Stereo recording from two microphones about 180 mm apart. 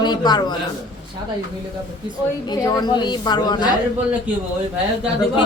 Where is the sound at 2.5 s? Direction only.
25° left (ahead or behind).